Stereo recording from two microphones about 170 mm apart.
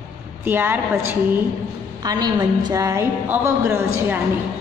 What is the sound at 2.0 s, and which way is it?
A woman's voice, 25° right (ahead or behind).